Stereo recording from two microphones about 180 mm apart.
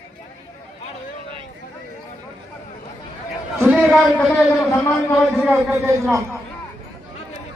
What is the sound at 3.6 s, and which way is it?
Speech, centre (ahead or behind).